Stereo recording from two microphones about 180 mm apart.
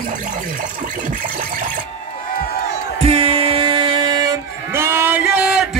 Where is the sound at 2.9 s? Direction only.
35° right (ahead or behind).